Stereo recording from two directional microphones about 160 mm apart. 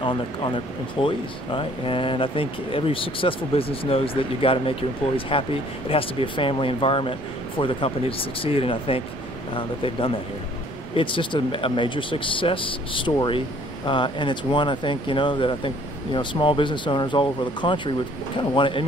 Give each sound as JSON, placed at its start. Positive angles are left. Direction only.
{"t": 0.0, "sound": "speech", "side_deg": 30}